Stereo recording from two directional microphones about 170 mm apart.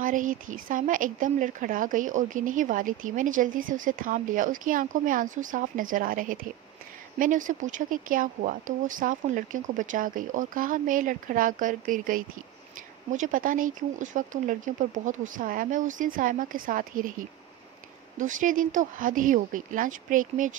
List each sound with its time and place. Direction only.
0.0 s speech: 50° right (ahead or behind)